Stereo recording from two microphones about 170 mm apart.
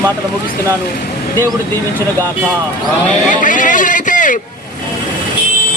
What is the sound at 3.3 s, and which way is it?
Speech, 50° left (ahead or behind).